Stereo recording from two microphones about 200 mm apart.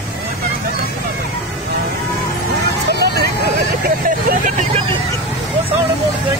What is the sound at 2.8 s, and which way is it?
Vehicle, 55° right (ahead or behind).